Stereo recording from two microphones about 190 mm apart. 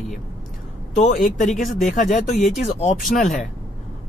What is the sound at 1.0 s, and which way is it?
Speech, 45° left (ahead or behind).